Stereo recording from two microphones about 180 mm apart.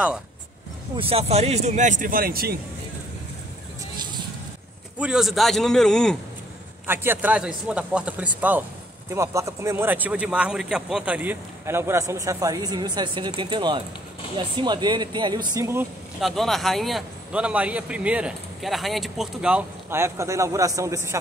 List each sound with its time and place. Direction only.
0.9 s speech: 30° right (ahead or behind); by 2.5 s 55° right (ahead or behind)
4.9 s a man's voice: 5° right (ahead or behind)
6.9 s a man's voice: 10° right (ahead or behind)
16.2 s a man's voice: centre (ahead or behind); by 21.2 s 15° right (ahead or behind)